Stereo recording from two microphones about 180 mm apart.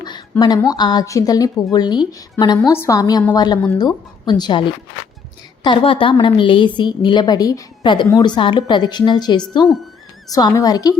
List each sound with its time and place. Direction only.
0.0 s a woman's voice: 25° left (ahead or behind)